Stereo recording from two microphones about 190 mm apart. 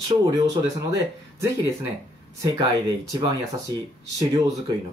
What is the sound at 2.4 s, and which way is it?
Speech, 20° right (ahead or behind).